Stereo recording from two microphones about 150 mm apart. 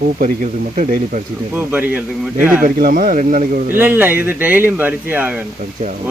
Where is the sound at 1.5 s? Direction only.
10° right (ahead or behind).